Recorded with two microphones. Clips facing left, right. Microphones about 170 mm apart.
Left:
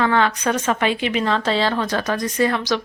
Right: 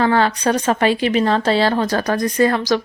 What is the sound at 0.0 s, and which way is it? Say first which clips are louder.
Speech: right 3 dB; 35° right (ahead or behind).